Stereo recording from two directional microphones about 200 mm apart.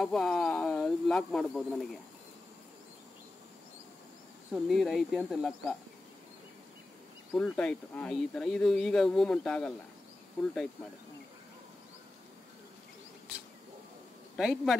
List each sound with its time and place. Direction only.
0.0 s a sound: centre (ahead or behind)
4.6 s speech: centre (ahead or behind)
7.5 s speech: 5° left (ahead or behind)
14.3 s speech: centre (ahead or behind)